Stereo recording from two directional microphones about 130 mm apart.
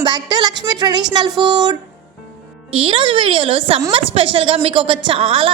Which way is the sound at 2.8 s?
40° right (ahead or behind).